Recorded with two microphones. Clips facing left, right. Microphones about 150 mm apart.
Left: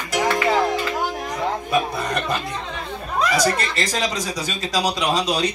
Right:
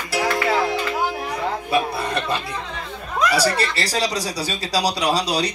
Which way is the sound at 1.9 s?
30° right (ahead or behind).